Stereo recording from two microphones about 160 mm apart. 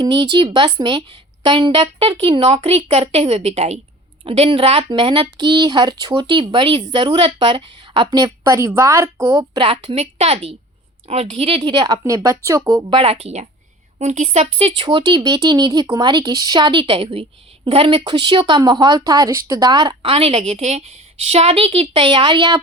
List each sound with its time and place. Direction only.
0.0 s a woman's voice: 30° right (ahead or behind)